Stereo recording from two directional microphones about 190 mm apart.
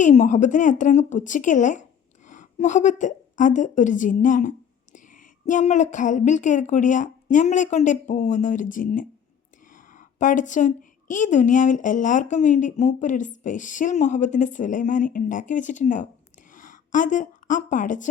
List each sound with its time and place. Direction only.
0.0 s a woman's voice: 40° left (ahead or behind)